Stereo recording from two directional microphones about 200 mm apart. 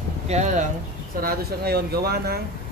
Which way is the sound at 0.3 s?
35° right (ahead or behind).